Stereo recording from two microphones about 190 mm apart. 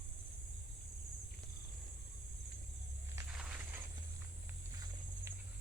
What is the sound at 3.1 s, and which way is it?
Walk, 10° right (ahead or behind).